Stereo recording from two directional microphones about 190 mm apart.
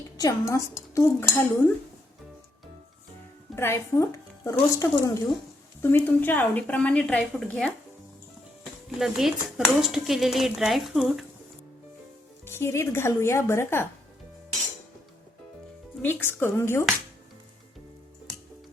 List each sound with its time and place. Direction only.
0.2 s a woman's voice: 15° left (ahead or behind)
3.5 s a woman's voice: 15° left (ahead or behind)
9.0 s speech: centre (ahead or behind)
12.5 s a woman's voice: 10° left (ahead or behind)
16.0 s a woman's voice: 10° left (ahead or behind)